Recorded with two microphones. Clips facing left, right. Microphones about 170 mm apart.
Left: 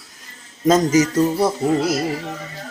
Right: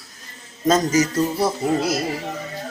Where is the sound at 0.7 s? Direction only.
20° left (ahead or behind).